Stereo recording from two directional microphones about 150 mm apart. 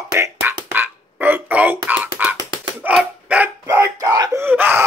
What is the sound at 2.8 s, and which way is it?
Dog, 10° right (ahead or behind).